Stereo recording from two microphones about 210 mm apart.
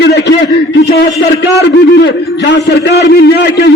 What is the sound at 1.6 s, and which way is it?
A man's voice, 55° left (ahead or behind).